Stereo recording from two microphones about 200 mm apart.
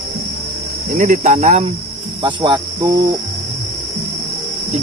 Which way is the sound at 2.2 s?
25° right (ahead or behind).